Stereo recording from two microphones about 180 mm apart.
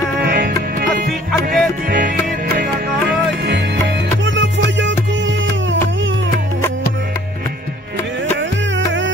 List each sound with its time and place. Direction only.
0.2 s music: 55° right (ahead or behind); by 6.1 s 90° right
8.4 s music: 90° right